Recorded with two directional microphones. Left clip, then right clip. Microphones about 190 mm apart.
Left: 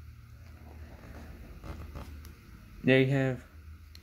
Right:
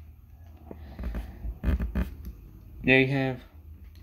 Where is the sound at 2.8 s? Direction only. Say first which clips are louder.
Right 3 dB; 30° left (ahead or behind).